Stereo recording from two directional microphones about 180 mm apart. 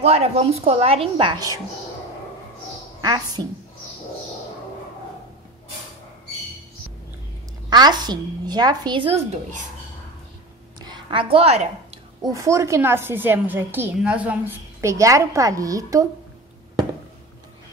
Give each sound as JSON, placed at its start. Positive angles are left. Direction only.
{"t": 0.0, "sound": "a woman's voice", "side_deg": -35}
{"t": 3.0, "sound": "speech", "side_deg": -20}
{"t": 7.7, "sound": "speech", "side_deg": -25}
{"t": 10.8, "sound": "a sound", "side_deg": -25}
{"t": 12.2, "sound": "a woman's voice", "side_deg": -20}